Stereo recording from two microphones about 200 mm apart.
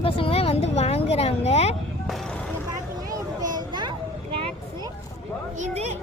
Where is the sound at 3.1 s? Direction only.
20° right (ahead or behind).